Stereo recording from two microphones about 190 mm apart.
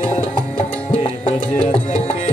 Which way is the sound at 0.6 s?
30° left (ahead or behind).